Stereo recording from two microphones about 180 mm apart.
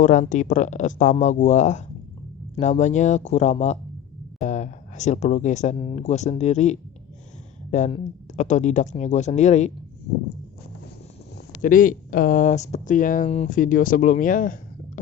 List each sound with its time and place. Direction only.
0.0 s speech: 45° left (ahead or behind)
5.7 s speech: 30° left (ahead or behind)
11.6 s speech: 50° left (ahead or behind)